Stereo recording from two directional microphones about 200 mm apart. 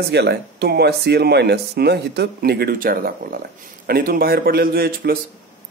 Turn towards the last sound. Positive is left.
turn(degrees=-50)  # may be behind; listen again after turning